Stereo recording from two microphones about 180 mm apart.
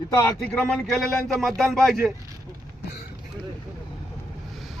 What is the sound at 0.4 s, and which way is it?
Speech, centre (ahead or behind).